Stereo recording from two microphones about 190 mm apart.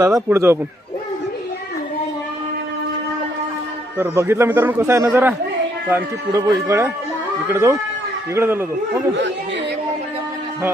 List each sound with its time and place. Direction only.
0.0 s a man's voice: 15° right (ahead or behind)
3.9 s a man's voice: 10° right (ahead or behind)